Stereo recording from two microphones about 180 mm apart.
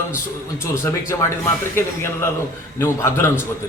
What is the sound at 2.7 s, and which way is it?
Speech, 15° left (ahead or behind).